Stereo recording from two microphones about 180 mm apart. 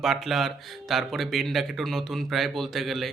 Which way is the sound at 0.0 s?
Centre (ahead or behind).